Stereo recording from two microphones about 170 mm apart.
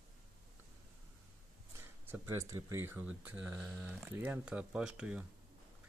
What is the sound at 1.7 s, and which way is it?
Speech, 15° right (ahead or behind).